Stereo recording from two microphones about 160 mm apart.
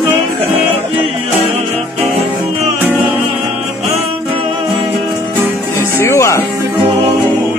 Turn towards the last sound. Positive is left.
turn(degrees=15)  # may be behind; listen again after turning